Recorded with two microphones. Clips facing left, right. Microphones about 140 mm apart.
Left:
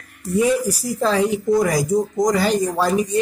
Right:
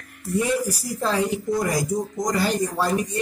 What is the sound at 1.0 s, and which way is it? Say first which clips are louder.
A man's voice: left 5 dB; 90° left.